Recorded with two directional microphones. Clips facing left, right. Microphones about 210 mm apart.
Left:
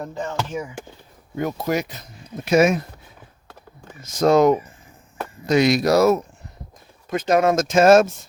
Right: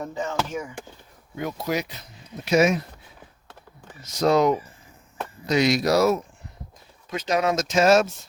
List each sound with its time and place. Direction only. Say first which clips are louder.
0.0 s speech: even; centre (ahead or behind)
1.4 s speech: left 4 dB; 50° left (ahead or behind)
4.0 s speech: left 4 dB; 50° left (ahead or behind)